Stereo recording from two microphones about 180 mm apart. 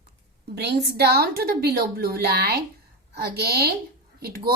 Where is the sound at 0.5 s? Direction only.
65° right (ahead or behind).